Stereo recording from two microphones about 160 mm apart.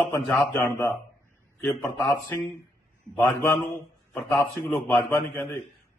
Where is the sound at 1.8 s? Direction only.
15° left (ahead or behind).